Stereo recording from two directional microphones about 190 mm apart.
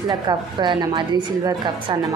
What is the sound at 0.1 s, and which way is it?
A woman's voice, 20° right (ahead or behind).